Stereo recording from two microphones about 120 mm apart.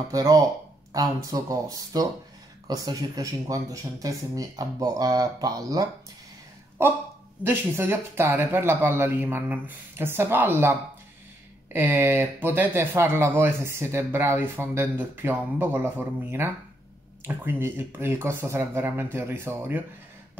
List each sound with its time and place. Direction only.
0.1 s speech: 30° right (ahead or behind)
7.4 s speech: 20° right (ahead or behind)